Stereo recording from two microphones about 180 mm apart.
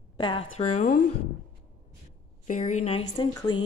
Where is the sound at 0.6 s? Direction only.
40° left (ahead or behind).